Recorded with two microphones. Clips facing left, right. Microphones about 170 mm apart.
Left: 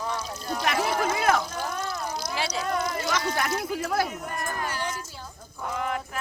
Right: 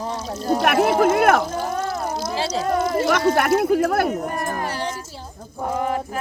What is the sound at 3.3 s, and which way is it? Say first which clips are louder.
Speech: right 11 dB; 60° right (ahead or behind).